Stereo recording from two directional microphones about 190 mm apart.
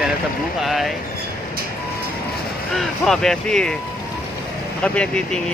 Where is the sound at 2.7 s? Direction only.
Centre (ahead or behind).